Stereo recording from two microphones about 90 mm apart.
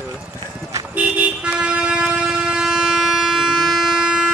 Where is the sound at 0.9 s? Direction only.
15° right (ahead or behind).